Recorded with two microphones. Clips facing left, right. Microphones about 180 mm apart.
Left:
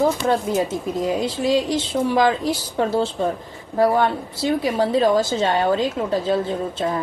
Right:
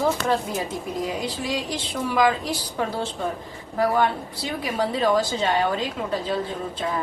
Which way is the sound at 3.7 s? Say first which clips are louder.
Left 4 dB; 25° left (ahead or behind).